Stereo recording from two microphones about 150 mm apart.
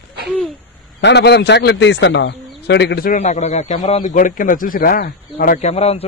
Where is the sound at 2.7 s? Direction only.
90° left.